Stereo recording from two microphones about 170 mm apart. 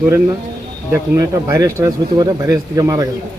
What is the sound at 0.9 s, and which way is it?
Speech, 15° right (ahead or behind).